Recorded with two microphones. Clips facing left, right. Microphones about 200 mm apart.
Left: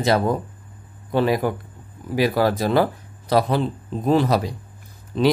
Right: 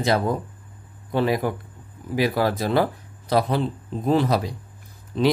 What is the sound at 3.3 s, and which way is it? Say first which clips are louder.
Speech: left 2 dB; 80° left.